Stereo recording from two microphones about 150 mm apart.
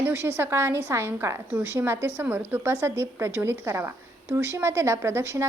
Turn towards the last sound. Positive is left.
turn(degrees=-20)  # may be behind; listen again after turning